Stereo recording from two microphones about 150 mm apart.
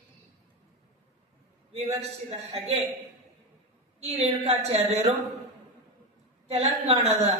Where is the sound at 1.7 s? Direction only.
45° right (ahead or behind).